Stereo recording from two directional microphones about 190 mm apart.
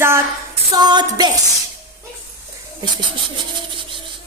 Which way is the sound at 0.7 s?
20° right (ahead or behind).